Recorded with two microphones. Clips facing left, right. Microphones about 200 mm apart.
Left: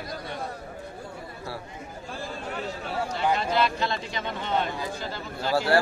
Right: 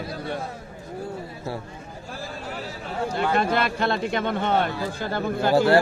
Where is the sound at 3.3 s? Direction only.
55° right (ahead or behind).